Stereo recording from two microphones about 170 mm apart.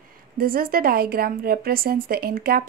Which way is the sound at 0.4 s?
60° right (ahead or behind).